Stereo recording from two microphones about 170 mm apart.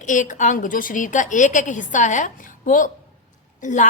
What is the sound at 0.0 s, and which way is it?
A woman's voice, 50° left (ahead or behind).